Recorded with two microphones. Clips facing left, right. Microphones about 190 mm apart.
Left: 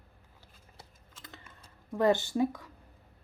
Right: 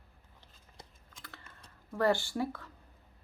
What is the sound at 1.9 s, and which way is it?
Speech, 20° left (ahead or behind).